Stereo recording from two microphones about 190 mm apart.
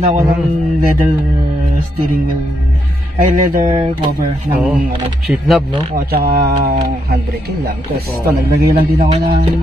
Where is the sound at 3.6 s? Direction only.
25° right (ahead or behind).